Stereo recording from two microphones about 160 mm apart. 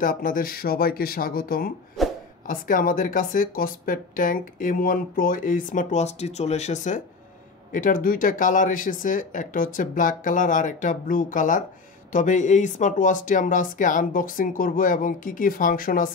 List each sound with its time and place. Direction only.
0.0 s speech: 60° left (ahead or behind)
2.0 s a sound: centre (ahead or behind)
2.4 s speech: 60° left (ahead or behind)